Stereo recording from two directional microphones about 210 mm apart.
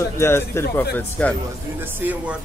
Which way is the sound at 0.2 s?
10° left (ahead or behind).